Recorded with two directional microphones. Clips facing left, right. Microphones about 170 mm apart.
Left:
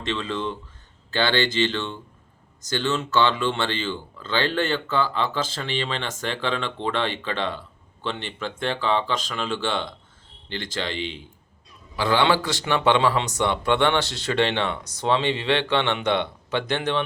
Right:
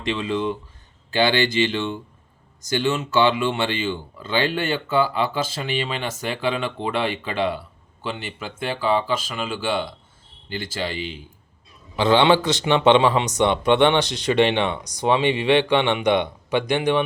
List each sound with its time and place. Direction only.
0.0 s speech: 15° right (ahead or behind)
11.9 s speech: 20° right (ahead or behind)